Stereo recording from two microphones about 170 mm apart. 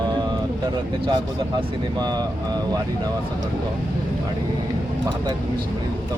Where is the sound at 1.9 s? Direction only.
25° right (ahead or behind).